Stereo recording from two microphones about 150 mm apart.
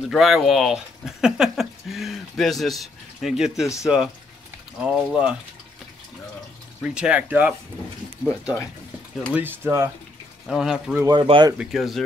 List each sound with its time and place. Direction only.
0.1 s speech: centre (ahead or behind)
6.8 s speech: 5° right (ahead or behind)
9.3 s speech: 15° right (ahead or behind)
10.4 s speech: centre (ahead or behind)
11.1 s speech: 30° right (ahead or behind)
11.5 s speech: centre (ahead or behind)